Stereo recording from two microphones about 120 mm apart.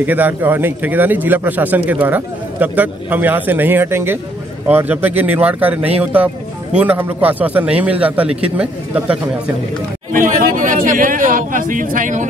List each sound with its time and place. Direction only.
0.0 s a man's voice: 15° right (ahead or behind)
10.1 s speech: 90° right